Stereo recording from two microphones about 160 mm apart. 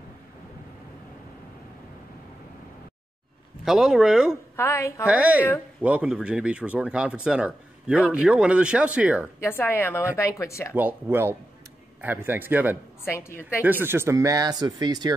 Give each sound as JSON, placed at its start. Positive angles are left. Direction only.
{"t": 3.6, "sound": "speech", "side_deg": -5}
{"t": 4.6, "sound": "a woman's voice", "side_deg": 15}
{"t": 5.0, "sound": "speech", "side_deg": -10}
{"t": 9.4, "sound": "a woman's voice", "side_deg": 15}
{"t": 10.7, "sound": "speech", "side_deg": -10}
{"t": 13.0, "sound": "a woman's voice", "side_deg": 15}
{"t": 13.6, "sound": "speech", "side_deg": -10}